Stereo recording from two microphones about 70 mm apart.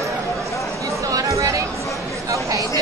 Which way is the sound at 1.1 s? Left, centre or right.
Right.